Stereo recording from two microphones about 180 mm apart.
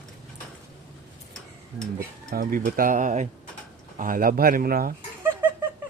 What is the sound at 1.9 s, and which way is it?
Speech, 55° right (ahead or behind).